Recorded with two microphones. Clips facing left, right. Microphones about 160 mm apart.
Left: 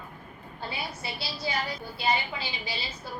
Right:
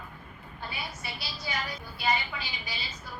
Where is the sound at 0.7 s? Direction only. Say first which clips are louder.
Left 4 dB; 30° left (ahead or behind).